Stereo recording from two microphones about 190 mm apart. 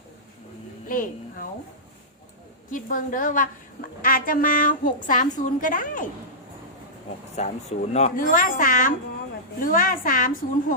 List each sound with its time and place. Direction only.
0.9 s a woman's voice: 45° left (ahead or behind)
2.6 s a woman's voice: 45° left (ahead or behind)
7.3 s a woman's voice: 35° left (ahead or behind)